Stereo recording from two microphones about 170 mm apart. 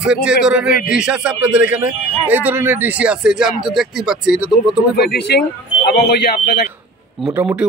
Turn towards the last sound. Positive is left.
turn(degrees=-10)  # may be behind; listen again after turning